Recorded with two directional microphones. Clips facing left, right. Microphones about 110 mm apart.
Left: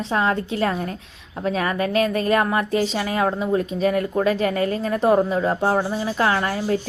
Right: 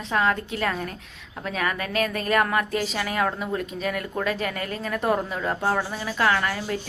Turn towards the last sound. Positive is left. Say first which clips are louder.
# left 3 dB
turn(degrees=30)  # may be behind; listen again after turning